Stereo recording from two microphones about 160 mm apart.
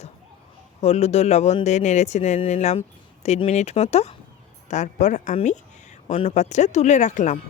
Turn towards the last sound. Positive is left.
turn(degrees=50)  # may be behind; listen again after turning